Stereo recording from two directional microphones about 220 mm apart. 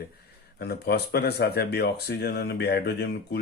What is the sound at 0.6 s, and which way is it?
Speech, 50° left (ahead or behind).